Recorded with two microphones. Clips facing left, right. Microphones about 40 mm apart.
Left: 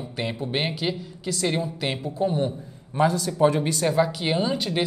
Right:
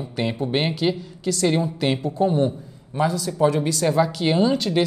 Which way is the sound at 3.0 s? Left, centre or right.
Left.